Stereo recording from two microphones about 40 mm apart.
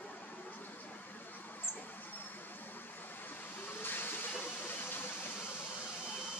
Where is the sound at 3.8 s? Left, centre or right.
Left.